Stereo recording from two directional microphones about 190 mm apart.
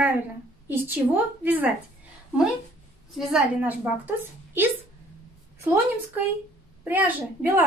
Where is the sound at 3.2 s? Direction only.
Centre (ahead or behind).